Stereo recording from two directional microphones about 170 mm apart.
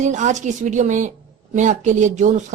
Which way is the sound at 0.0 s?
45° right (ahead or behind).